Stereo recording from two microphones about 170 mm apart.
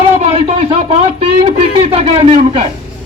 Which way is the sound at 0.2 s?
35° right (ahead or behind).